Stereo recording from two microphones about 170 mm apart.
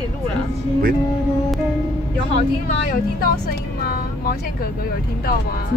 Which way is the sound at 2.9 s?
55° left (ahead or behind).